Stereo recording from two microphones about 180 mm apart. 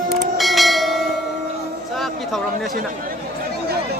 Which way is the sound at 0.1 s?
Centre (ahead or behind).